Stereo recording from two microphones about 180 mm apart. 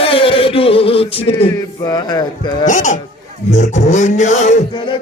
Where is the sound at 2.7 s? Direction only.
45° left (ahead or behind).